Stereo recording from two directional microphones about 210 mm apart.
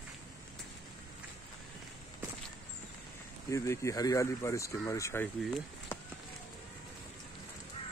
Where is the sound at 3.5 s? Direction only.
15° left (ahead or behind).